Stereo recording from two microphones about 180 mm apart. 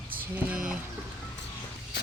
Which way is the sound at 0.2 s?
5° right (ahead or behind).